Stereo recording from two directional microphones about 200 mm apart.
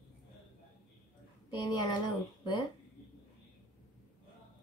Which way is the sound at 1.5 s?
20° left (ahead or behind).